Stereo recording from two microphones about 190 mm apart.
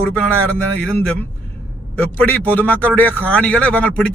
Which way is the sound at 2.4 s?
10° left (ahead or behind).